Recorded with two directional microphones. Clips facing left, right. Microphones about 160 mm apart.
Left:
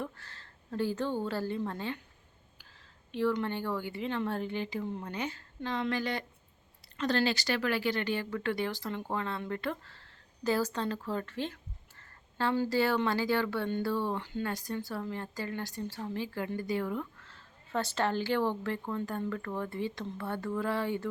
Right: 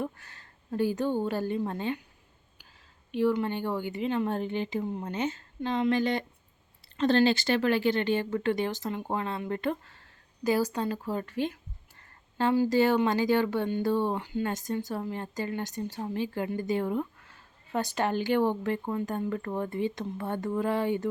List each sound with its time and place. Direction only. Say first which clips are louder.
0.0 s a woman's voice: right 5 dB; 15° right (ahead or behind)
3.1 s speech: right 4 dB; 15° right (ahead or behind)